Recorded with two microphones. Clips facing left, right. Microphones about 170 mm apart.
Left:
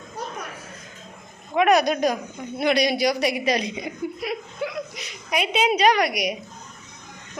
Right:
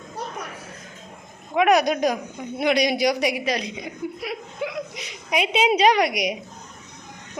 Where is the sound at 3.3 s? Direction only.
Centre (ahead or behind).